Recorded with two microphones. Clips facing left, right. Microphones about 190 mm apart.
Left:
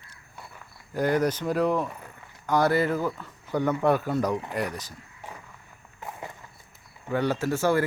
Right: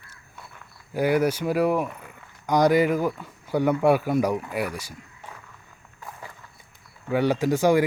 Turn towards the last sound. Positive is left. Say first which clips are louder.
# right 4 dB
turn(degrees=-15)  # may be behind; listen again after turning